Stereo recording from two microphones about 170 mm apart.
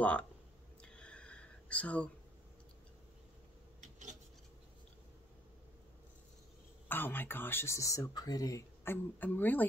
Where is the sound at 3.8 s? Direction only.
45° right (ahead or behind).